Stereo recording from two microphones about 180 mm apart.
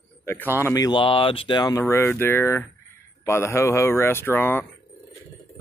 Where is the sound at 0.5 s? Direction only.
15° left (ahead or behind).